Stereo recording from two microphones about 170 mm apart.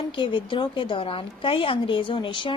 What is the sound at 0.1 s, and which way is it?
A woman's voice, 30° left (ahead or behind).